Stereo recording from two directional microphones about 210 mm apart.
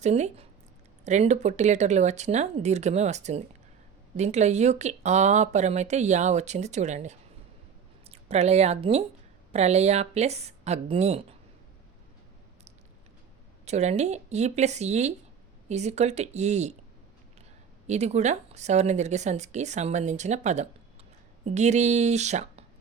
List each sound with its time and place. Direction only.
0.0 s speech: 30° right (ahead or behind)
13.7 s speech: 30° right (ahead or behind)
17.8 s speech: 30° right (ahead or behind)